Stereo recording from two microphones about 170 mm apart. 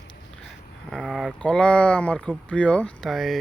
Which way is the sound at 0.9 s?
Centre (ahead or behind).